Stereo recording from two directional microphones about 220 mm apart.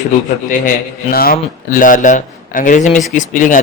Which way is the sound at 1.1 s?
40° left (ahead or behind).